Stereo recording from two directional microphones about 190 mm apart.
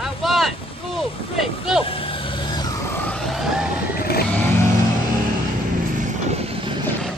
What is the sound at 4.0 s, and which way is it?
Vehicle, 55° left (ahead or behind).